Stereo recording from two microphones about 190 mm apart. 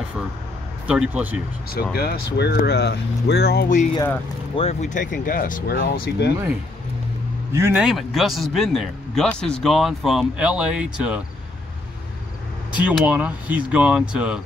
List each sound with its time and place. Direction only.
0.8 s speech: 5° right (ahead or behind)
2.0 s speech: 55° left (ahead or behind)
4.6 s speech: 35° left (ahead or behind); by 6.3 s 55° left (ahead or behind)
7.5 s speech: 10° right (ahead or behind)
12.8 s speech: 5° right (ahead or behind)